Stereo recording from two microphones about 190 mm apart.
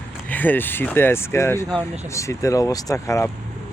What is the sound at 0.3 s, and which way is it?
Speech, 10° left (ahead or behind).